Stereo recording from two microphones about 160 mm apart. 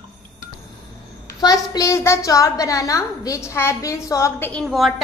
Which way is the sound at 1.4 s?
25° left (ahead or behind).